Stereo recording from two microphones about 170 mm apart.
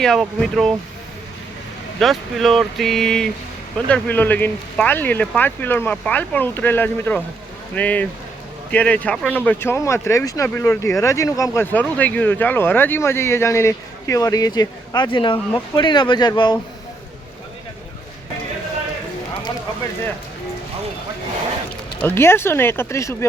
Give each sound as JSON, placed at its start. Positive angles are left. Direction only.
{"t": 0.0, "sound": "speech", "side_deg": 0}
{"t": 2.0, "sound": "speech", "side_deg": 0}
{"t": 22.0, "sound": "speech", "side_deg": 15}